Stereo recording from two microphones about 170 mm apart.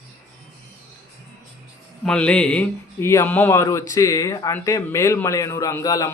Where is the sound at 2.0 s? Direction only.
5° left (ahead or behind).